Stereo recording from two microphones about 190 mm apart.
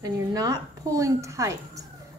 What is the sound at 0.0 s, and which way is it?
A woman's voice, 20° right (ahead or behind).